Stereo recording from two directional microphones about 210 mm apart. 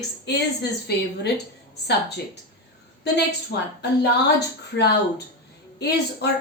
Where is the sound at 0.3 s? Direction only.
50° left (ahead or behind).